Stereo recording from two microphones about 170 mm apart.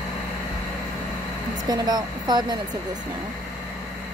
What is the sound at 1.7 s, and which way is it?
Speech, 25° right (ahead or behind).